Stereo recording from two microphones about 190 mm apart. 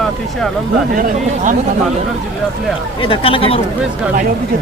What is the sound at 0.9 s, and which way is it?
Speech, 45° right (ahead or behind).